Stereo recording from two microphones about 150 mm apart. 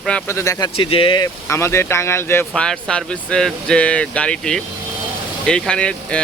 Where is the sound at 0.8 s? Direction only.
35° left (ahead or behind).